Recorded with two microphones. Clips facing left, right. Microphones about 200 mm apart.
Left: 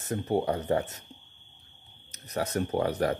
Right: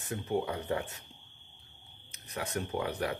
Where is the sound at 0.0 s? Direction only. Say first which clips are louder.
Left 5 dB; 40° left (ahead or behind).